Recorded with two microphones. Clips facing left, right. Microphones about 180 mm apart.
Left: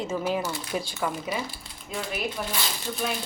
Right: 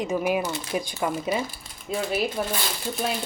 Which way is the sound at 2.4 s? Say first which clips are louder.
Right 5 dB; 35° right (ahead or behind).